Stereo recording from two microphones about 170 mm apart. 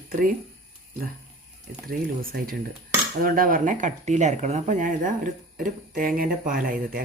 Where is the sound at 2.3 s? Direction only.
60° right (ahead or behind).